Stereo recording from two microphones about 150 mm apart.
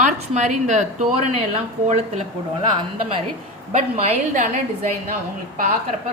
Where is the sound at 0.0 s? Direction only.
55° right (ahead or behind).